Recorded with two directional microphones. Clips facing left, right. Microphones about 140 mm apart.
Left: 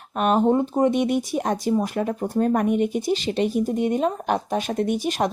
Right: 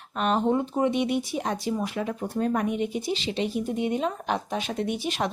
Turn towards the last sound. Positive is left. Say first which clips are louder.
# left 5 dB
turn(degrees=45)  # may be behind; listen again after turning